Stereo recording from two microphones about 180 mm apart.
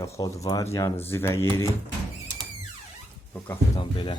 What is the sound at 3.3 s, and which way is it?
Speech, 10° left (ahead or behind).